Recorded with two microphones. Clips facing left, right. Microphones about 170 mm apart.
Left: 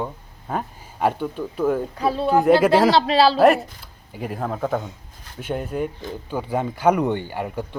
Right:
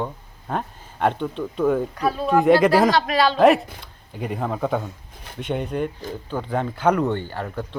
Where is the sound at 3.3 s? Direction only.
Centre (ahead or behind).